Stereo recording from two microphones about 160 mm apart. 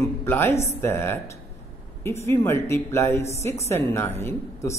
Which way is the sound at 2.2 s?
15° left (ahead or behind).